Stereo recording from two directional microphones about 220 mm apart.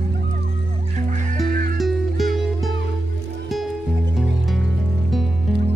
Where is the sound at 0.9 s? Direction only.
35° right (ahead or behind).